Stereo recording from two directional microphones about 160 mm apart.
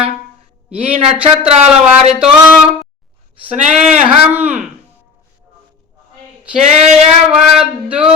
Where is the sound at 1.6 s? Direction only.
5° right (ahead or behind).